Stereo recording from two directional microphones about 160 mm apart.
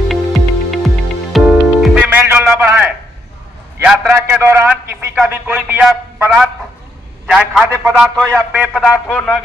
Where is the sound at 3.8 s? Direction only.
5° right (ahead or behind).